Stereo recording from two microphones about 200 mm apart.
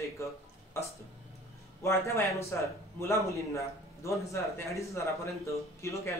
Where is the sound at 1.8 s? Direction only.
15° left (ahead or behind).